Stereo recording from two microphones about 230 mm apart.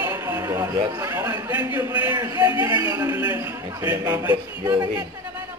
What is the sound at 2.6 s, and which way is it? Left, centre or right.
A man's voice, centre.